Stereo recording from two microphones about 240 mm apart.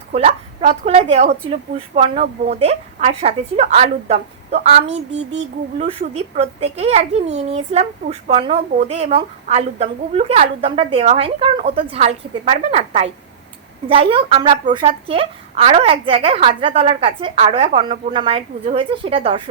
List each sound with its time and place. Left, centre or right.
0.1 s a woman's voice: right